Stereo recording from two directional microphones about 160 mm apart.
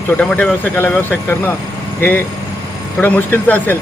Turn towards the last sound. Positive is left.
turn(degrees=10)  # may be behind; listen again after turning